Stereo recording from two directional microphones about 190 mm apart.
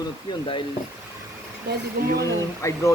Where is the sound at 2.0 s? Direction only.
50° right (ahead or behind).